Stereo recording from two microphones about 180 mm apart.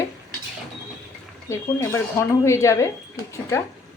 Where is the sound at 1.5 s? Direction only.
15° left (ahead or behind).